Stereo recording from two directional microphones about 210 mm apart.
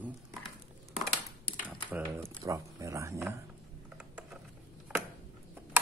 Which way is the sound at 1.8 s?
10° right (ahead or behind).